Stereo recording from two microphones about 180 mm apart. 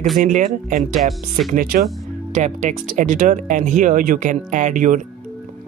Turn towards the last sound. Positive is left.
turn(degrees=-45)  # may be behind; listen again after turning